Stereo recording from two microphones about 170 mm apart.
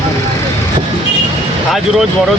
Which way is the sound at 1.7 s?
Centre (ahead or behind).